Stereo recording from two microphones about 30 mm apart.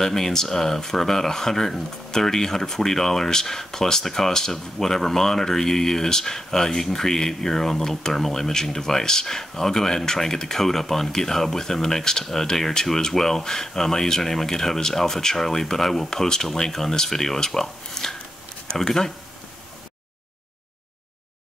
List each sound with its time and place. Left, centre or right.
0.0 s speech: centre